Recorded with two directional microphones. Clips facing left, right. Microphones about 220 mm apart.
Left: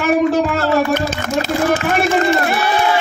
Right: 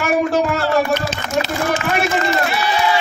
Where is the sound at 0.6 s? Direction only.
50° left (ahead or behind).